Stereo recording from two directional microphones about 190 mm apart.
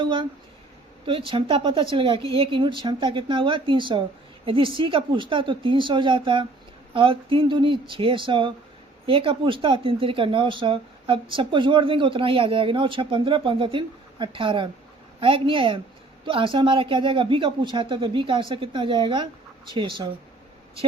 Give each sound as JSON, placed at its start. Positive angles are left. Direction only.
{"t": 0.0, "sound": "speech", "side_deg": -25}